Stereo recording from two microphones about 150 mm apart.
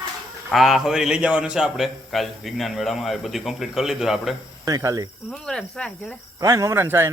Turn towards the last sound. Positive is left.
turn(degrees=-15)  # may be behind; listen again after turning